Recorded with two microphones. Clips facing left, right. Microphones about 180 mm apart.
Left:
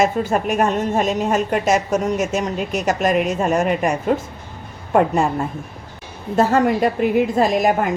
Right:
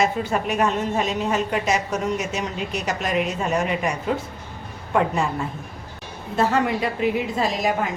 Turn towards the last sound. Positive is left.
turn(degrees=55)  # may be behind; listen again after turning